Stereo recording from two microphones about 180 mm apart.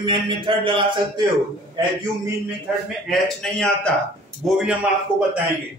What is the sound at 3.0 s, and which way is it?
Speech, centre (ahead or behind).